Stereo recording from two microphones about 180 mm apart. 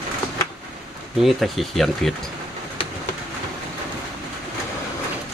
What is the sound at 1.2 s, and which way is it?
Speech, centre (ahead or behind).